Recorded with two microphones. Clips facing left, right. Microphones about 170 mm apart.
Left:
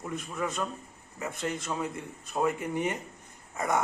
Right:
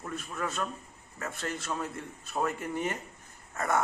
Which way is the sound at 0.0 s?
10° left (ahead or behind).